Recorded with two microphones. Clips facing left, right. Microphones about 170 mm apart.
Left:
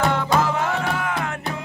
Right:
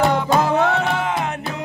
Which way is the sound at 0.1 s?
15° right (ahead or behind).